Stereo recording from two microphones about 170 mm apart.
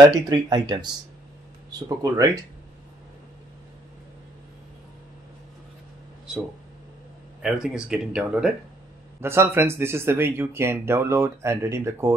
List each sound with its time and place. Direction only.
0.3 s speech: 25° right (ahead or behind)
7.4 s a man's voice: 5° right (ahead or behind)